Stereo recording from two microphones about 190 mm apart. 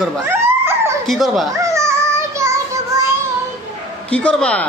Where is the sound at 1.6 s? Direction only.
15° right (ahead or behind).